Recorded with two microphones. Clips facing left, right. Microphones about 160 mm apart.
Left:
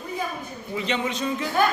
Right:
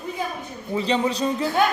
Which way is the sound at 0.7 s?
35° right (ahead or behind).